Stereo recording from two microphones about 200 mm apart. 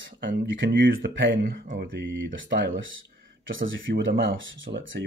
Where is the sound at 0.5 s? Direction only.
65° right (ahead or behind).